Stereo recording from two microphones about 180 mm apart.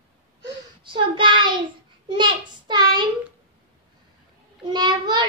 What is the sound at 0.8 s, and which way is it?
Child singing, 25° right (ahead or behind).